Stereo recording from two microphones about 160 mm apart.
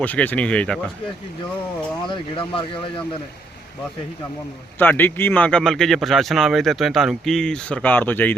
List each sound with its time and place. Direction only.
0.0 s speech: 10° left (ahead or behind)
2.0 s speech: 35° left (ahead or behind)
4.8 s speech: 10° left (ahead or behind)